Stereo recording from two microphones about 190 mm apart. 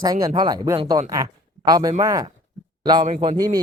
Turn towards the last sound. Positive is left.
turn(degrees=-20)  # may be behind; listen again after turning